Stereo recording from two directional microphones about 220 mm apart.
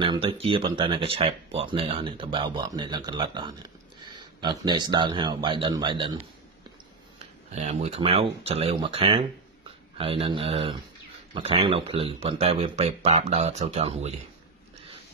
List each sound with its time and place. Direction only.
0.0 s speech: 20° right (ahead or behind)
7.5 s speech: 30° right (ahead or behind)